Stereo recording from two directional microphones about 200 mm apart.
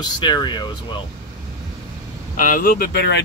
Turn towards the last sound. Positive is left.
turn(degrees=55)  # may be behind; listen again after turning